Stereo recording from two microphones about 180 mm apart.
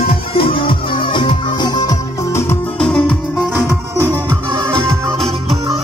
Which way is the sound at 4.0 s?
15° right (ahead or behind).